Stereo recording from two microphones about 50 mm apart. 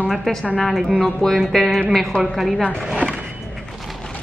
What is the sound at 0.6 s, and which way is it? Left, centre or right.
Speech, centre.